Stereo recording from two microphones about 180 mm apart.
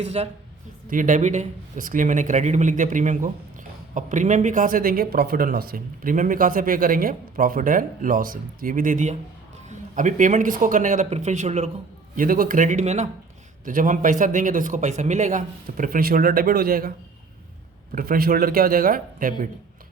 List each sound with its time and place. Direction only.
0.0 s speech: 35° right (ahead or behind)
0.9 s speech: 45° right (ahead or behind)
12.1 s speech: 50° right (ahead or behind)
17.9 s speech: 55° right (ahead or behind)